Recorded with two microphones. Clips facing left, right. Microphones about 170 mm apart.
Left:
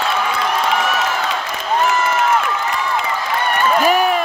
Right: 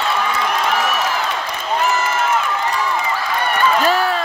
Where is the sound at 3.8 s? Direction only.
15° left (ahead or behind).